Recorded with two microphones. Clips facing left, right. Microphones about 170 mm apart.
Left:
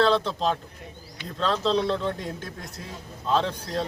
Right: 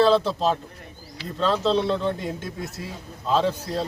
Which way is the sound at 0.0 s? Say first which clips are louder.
Right 3 dB; 5° right (ahead or behind).